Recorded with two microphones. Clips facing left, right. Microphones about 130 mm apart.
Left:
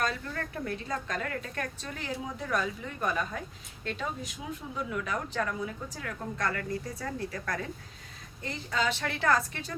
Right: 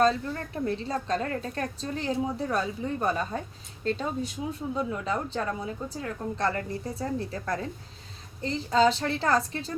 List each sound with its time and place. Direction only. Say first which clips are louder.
0.0 s a woman's voice: right 8 dB; 25° right (ahead or behind)